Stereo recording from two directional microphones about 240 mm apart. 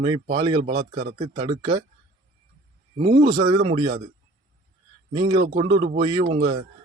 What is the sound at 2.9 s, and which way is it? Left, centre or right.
Speech, right.